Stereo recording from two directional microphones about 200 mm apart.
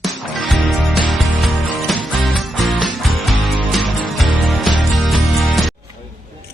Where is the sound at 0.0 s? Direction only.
Centre (ahead or behind).